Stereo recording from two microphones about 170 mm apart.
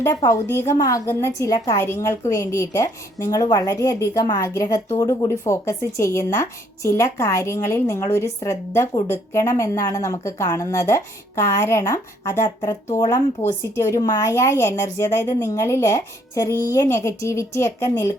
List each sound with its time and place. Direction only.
0.0 s a woman's voice: 20° left (ahead or behind)